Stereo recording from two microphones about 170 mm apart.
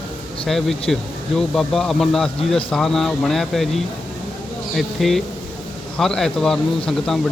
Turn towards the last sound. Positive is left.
turn(degrees=0)  # may be behind; listen again after turning